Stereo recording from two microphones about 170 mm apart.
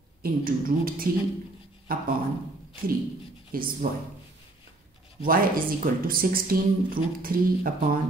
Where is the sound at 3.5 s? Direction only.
60° right (ahead or behind).